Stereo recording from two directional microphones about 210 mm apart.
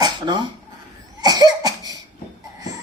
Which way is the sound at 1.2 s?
15° right (ahead or behind).